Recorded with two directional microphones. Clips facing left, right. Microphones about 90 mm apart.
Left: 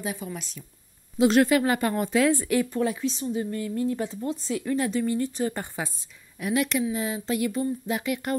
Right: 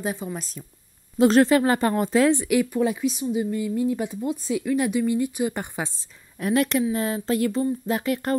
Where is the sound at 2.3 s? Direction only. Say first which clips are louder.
Right 3 dB; 15° right (ahead or behind).